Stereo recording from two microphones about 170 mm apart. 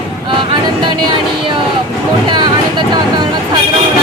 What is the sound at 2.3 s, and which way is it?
Speech, 25° right (ahead or behind).